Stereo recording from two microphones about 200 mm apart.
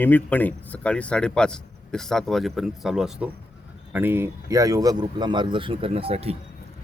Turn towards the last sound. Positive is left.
turn(degrees=-30)  # may be behind; listen again after turning